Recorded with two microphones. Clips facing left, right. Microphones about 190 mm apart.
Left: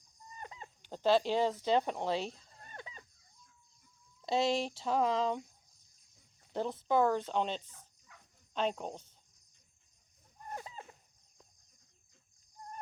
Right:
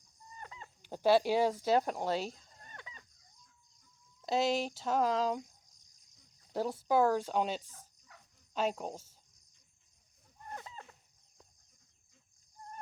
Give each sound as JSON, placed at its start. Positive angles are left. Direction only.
{"t": 0.3, "sound": "chicken", "side_deg": 20}
{"t": 0.8, "sound": "speech", "side_deg": -10}
{"t": 2.7, "sound": "a sound", "side_deg": 35}
{"t": 4.2, "sound": "speech", "side_deg": 0}
{"t": 6.5, "sound": "speech", "side_deg": -5}
{"t": 10.5, "sound": "a sound", "side_deg": 20}